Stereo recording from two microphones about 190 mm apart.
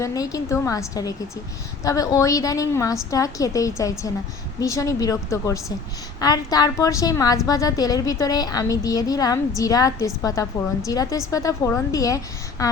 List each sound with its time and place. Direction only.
0.0 s a woman's voice: 20° left (ahead or behind)